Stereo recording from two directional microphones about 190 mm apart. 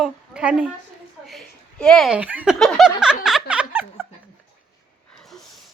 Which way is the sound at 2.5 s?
Centre (ahead or behind).